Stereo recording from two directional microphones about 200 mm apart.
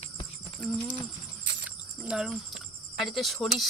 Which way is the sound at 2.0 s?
Centre (ahead or behind).